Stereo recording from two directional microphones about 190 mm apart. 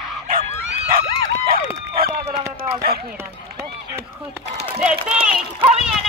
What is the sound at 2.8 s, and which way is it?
Speech, 55° right (ahead or behind).